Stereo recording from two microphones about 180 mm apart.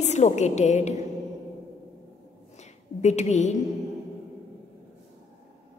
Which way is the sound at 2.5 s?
40° left (ahead or behind).